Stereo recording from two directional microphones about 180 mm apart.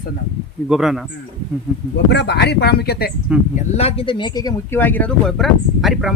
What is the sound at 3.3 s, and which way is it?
Speech, 5° right (ahead or behind).